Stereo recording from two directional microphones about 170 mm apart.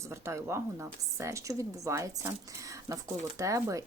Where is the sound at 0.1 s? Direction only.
15° right (ahead or behind).